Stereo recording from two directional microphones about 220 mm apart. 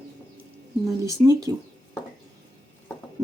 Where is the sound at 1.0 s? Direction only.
15° right (ahead or behind).